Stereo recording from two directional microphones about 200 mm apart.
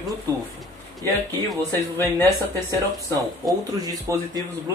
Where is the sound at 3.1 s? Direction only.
20° right (ahead or behind).